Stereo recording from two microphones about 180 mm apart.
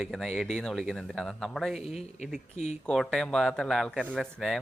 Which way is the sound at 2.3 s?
40° left (ahead or behind).